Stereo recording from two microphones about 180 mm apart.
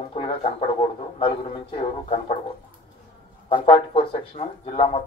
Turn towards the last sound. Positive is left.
turn(degrees=30)  # may be behind; listen again after turning